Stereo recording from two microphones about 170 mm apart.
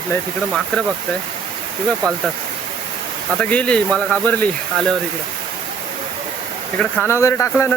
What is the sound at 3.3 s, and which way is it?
Speech, 5° left (ahead or behind).